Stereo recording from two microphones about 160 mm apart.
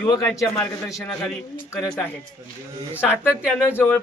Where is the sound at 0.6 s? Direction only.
20° left (ahead or behind).